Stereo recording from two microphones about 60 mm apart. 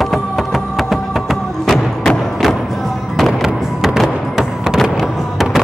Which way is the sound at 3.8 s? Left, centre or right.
Centre.